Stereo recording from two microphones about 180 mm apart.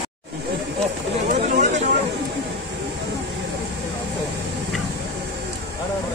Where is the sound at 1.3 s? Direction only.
40° right (ahead or behind).